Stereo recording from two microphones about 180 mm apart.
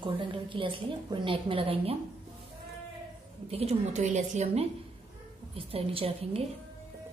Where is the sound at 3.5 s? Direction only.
35° right (ahead or behind).